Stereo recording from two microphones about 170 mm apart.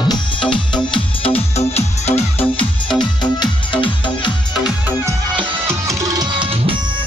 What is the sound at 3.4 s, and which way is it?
Music, 30° left (ahead or behind).